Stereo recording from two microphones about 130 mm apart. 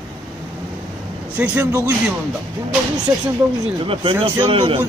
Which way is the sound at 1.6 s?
25° right (ahead or behind).